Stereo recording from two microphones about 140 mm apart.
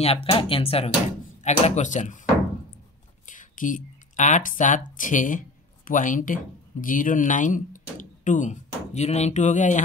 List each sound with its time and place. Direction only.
0.0 s speech: 45° left (ahead or behind)
1.4 s speech: 60° left (ahead or behind)
3.3 s speech: 70° left (ahead or behind)